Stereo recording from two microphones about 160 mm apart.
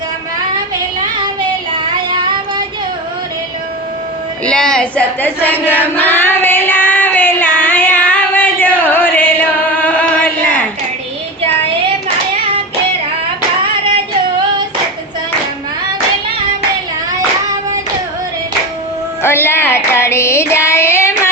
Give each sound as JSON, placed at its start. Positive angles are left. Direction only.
{"t": 4.4, "sound": "a sound", "side_deg": 5}
{"t": 19.2, "sound": "female singing", "side_deg": 15}
{"t": 20.7, "sound": "child singing", "side_deg": 15}